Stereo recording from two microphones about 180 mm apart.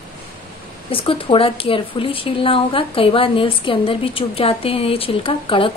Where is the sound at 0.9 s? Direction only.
30° left (ahead or behind).